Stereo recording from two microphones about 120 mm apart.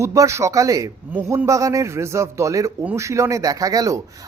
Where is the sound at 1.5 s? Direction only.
25° right (ahead or behind).